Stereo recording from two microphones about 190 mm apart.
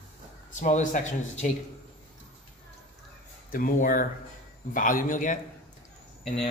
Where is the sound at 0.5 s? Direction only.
40° left (ahead or behind).